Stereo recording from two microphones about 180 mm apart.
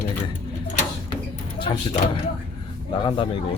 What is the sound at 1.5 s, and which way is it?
Speech, 25° left (ahead or behind).